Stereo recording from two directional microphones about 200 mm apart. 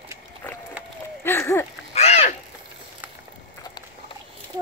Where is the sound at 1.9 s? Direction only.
30° left (ahead or behind).